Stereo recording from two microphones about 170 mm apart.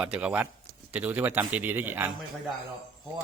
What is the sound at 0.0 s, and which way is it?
Speech, 5° right (ahead or behind).